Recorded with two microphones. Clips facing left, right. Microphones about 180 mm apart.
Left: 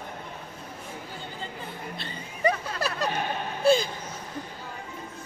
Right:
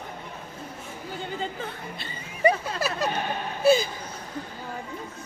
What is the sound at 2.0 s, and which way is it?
Snicker, 5° right (ahead or behind).